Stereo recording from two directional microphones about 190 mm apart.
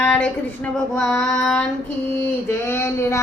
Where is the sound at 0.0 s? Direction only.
5° left (ahead or behind).